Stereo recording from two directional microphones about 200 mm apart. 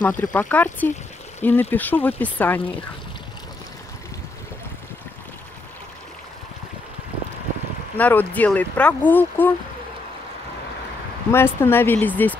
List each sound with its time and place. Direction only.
0.0 s speech: 10° left (ahead or behind)
8.0 s speech: 10° left (ahead or behind)
11.3 s speech: 10° left (ahead or behind)